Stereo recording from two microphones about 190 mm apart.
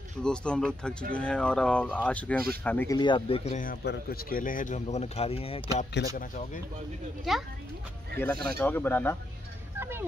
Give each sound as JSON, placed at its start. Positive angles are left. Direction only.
{"t": 0.2, "sound": "speech", "side_deg": 5}
{"t": 3.0, "sound": "speech", "side_deg": 25}
{"t": 3.8, "sound": "speech", "side_deg": 55}
{"t": 5.9, "sound": "speech", "side_deg": 45}
{"t": 8.2, "sound": "speech", "side_deg": 10}
{"t": 9.8, "sound": "a sound", "side_deg": -10}